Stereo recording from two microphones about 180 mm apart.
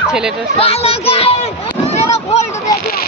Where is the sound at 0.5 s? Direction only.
35° left (ahead or behind).